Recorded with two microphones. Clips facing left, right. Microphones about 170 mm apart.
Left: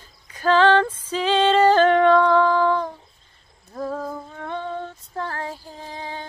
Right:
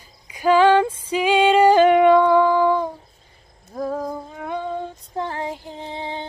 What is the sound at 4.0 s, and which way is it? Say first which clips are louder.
Female singing: right 3 dB; 10° right (ahead or behind).